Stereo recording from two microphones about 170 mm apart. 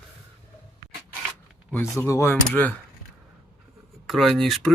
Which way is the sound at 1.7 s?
15° left (ahead or behind).